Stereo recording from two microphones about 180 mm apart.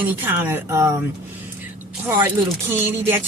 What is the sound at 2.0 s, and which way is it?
Speech, 10° right (ahead or behind).